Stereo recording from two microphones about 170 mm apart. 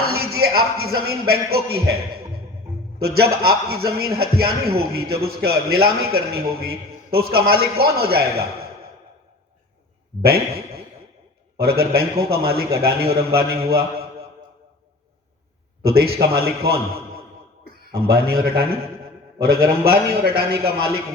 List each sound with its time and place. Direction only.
0.0 s speech: 65° right (ahead or behind)
3.0 s a man's voice: 65° right (ahead or behind)
10.2 s a man's voice: 65° right (ahead or behind)
13.7 s mantra: 65° right (ahead or behind)
15.8 s a man's voice: 65° right (ahead or behind)
18.1 s a man's voice: 60° right (ahead or behind)